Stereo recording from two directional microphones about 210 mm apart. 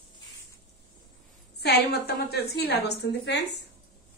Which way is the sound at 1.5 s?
50° left (ahead or behind).